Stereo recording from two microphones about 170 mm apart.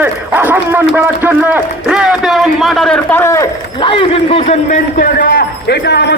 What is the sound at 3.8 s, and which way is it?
Speech, 30° left (ahead or behind).